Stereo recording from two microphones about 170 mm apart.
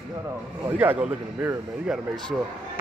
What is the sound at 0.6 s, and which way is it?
Speech, 10° right (ahead or behind).